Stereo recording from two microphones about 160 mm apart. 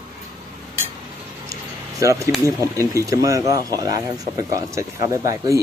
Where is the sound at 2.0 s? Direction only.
20° right (ahead or behind).